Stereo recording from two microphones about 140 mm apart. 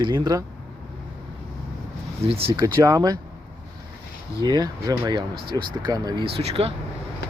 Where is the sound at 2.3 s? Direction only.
40° right (ahead or behind).